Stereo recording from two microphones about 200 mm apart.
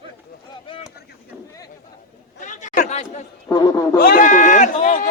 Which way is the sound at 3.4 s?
20° left (ahead or behind).